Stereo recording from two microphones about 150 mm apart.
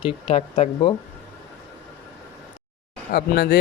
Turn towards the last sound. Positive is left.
turn(degrees=90)